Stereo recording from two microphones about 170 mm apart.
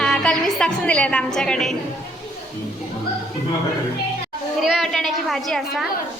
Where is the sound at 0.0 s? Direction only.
5° left (ahead or behind).